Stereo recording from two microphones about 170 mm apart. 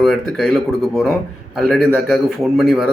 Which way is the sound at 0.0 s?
Centre (ahead or behind).